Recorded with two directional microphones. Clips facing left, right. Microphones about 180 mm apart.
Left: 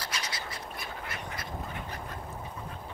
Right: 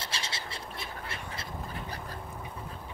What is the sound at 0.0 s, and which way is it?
Duck, 25° right (ahead or behind).